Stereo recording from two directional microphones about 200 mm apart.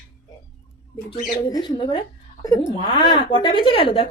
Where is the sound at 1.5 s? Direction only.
20° left (ahead or behind).